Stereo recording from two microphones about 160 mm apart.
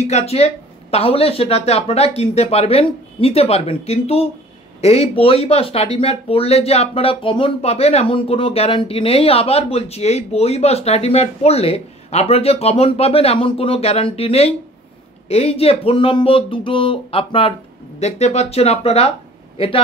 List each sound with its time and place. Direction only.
0.0 s speech: 40° left (ahead or behind)